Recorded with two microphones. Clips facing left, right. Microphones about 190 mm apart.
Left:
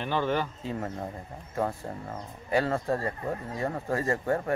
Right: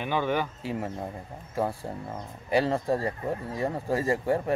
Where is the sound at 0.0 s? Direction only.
10° right (ahead or behind).